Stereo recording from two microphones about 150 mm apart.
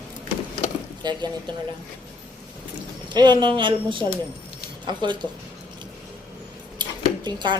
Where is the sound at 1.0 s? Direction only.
30° right (ahead or behind).